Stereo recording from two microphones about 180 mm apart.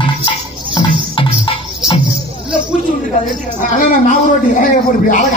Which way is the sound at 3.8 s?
45° left (ahead or behind).